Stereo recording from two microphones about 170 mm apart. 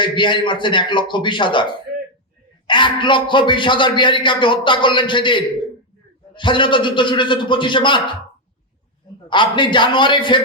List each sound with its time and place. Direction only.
0.0 s speech: 30° left (ahead or behind)
9.3 s speech: 30° left (ahead or behind)